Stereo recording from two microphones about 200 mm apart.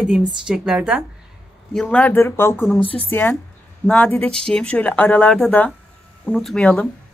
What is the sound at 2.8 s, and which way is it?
Speech, 25° left (ahead or behind).